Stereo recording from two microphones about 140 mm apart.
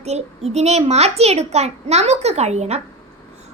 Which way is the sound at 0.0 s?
50° right (ahead or behind).